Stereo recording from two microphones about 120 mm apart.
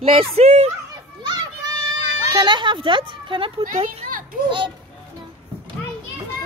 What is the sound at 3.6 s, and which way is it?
Speech, 80° right.